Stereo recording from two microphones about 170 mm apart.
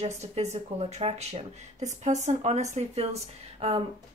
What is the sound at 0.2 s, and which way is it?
Speech, 40° right (ahead or behind).